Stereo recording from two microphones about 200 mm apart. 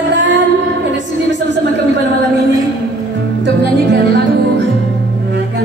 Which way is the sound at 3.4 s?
60° right (ahead or behind).